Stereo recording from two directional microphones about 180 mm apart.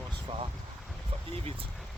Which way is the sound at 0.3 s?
30° right (ahead or behind).